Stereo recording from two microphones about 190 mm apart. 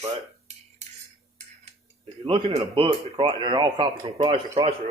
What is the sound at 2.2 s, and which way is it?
Speech, 30° right (ahead or behind).